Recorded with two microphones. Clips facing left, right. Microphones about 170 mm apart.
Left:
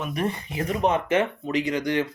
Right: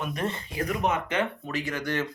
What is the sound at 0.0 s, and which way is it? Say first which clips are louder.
Speech: left 3 dB; 10° left (ahead or behind).